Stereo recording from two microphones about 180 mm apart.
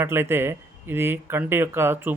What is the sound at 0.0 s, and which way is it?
Speech, 15° right (ahead or behind).